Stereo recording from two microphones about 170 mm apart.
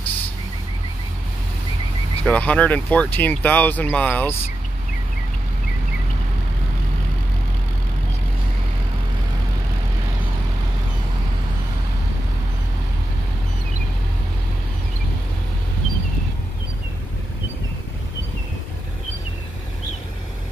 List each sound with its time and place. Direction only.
2.2 s speech: 5° left (ahead or behind)